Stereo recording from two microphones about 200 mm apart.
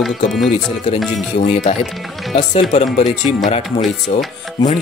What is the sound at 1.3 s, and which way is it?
Speech, 35° left (ahead or behind).